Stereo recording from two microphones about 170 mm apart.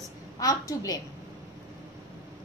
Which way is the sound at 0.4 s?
20° left (ahead or behind).